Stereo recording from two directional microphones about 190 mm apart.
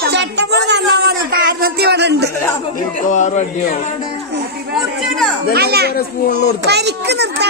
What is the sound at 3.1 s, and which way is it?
Speech, 40° left (ahead or behind).